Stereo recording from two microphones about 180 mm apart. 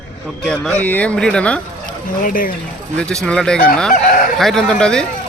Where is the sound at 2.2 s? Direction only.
50° left (ahead or behind).